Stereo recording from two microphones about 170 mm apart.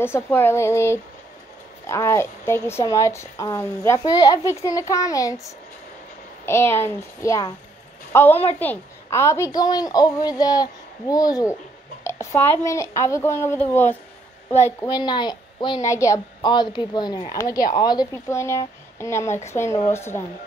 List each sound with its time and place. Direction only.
0.0 s speech: 15° left (ahead or behind)
6.4 s a woman's voice: 15° left (ahead or behind)
15.0 s a woman's voice: 25° left (ahead or behind)